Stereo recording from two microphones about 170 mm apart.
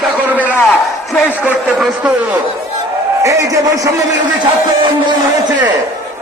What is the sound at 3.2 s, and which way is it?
Speech, 20° right (ahead or behind).